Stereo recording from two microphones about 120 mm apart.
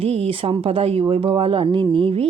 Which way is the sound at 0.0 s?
50° right (ahead or behind).